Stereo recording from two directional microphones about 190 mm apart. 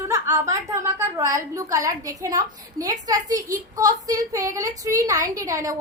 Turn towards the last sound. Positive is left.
turn(degrees=-15)  # may be behind; listen again after turning